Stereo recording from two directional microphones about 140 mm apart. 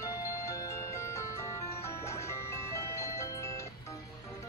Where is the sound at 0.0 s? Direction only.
20° left (ahead or behind).